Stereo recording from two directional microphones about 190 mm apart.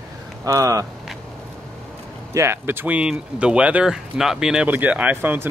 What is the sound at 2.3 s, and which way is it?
Speech, 15° right (ahead or behind).